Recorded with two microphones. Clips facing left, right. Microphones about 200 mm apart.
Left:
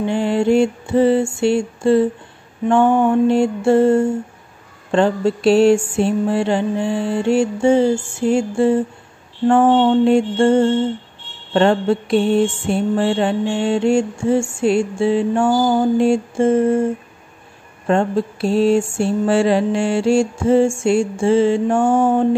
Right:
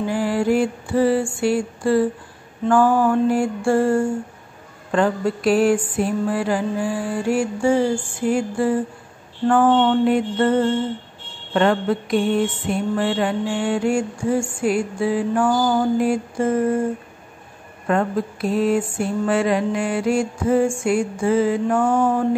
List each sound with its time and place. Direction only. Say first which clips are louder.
0.0 s mantra: left 3 dB; 25° left (ahead or behind)